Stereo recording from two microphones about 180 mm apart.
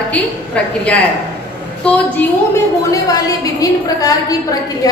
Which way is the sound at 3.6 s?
20° left (ahead or behind).